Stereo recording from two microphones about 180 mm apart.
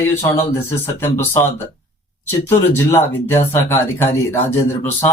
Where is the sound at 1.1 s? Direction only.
15° left (ahead or behind).